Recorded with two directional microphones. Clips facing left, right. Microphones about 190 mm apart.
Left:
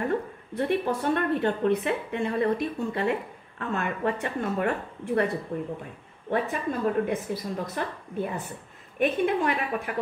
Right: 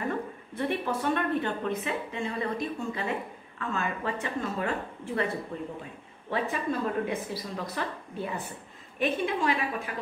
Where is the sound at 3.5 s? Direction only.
60° left (ahead or behind).